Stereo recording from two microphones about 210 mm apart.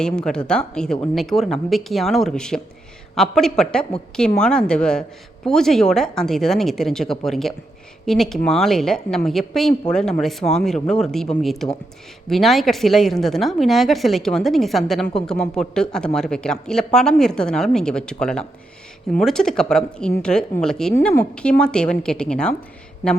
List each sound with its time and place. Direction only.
0.0 s speech: 5° left (ahead or behind)